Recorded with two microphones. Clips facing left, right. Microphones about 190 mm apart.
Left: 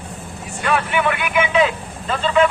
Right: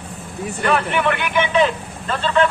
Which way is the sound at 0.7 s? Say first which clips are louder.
Even; 5° left (ahead or behind).